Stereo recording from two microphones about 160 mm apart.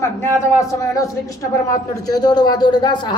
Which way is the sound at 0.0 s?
15° left (ahead or behind).